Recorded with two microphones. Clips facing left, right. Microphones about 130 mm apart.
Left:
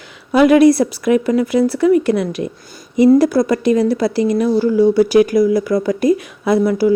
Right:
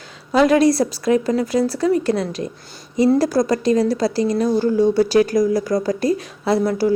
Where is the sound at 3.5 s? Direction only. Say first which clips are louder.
Left 3 dB; 40° right (ahead or behind).